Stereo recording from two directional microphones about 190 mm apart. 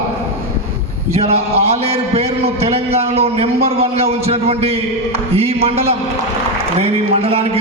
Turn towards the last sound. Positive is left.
turn(degrees=-30)  # may be behind; listen again after turning